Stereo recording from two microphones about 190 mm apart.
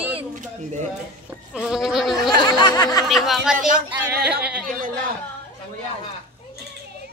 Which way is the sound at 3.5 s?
45° right (ahead or behind).